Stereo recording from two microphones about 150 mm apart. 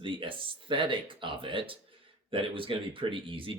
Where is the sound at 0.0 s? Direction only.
35° right (ahead or behind).